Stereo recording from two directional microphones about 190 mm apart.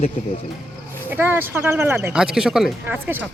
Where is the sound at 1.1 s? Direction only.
10° right (ahead or behind).